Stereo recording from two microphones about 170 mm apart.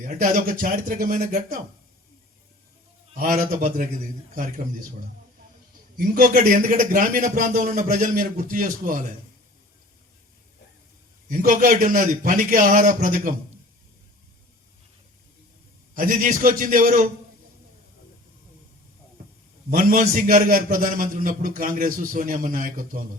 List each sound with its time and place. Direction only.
0.0 s a man's voice: 50° right (ahead or behind)
3.2 s a man's voice: 55° right (ahead or behind)
6.0 s a man's voice: 55° right (ahead or behind)
11.3 s a man's voice: 50° right (ahead or behind)
16.0 s a man's voice: 50° right (ahead or behind)
19.7 s a man's voice: 50° right (ahead or behind)